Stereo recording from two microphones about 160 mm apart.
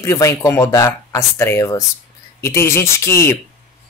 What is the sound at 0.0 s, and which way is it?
Speech, 20° left (ahead or behind).